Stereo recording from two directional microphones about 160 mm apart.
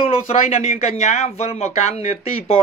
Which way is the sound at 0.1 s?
40° left (ahead or behind).